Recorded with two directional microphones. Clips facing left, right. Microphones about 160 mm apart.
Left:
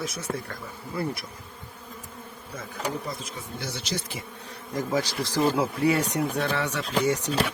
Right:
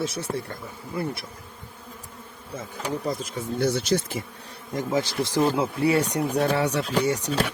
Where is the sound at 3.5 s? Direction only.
55° right (ahead or behind).